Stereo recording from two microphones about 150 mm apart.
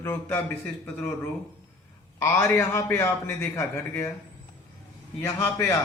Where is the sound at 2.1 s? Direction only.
15° left (ahead or behind).